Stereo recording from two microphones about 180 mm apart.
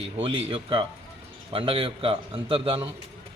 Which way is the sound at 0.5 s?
30° right (ahead or behind).